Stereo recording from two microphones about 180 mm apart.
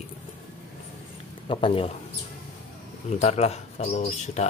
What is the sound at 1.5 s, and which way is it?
Speech, 30° left (ahead or behind).